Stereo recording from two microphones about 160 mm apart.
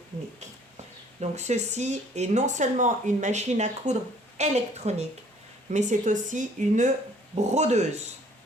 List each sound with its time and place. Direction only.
1.2 s speech: 45° right (ahead or behind)